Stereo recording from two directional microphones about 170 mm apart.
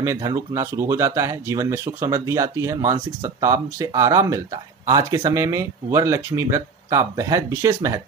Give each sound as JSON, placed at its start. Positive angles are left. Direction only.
{"t": 0.0, "sound": "speech", "side_deg": -20}